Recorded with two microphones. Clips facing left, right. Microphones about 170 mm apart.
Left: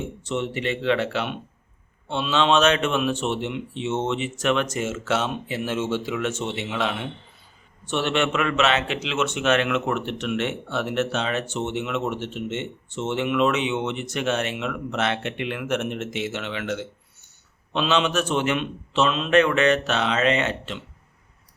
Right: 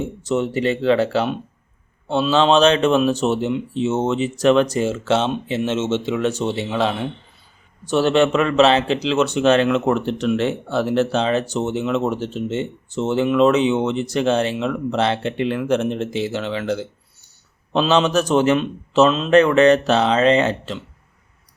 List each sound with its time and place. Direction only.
0.2 s a man's voice: 40° right (ahead or behind)